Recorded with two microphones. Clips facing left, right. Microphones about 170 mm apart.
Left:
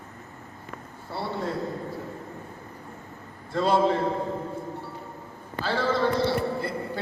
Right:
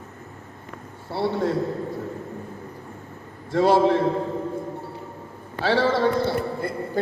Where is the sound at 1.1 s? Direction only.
70° right (ahead or behind).